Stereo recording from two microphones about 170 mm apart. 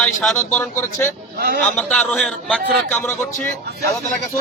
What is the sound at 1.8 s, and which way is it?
A man's voice, 5° left (ahead or behind).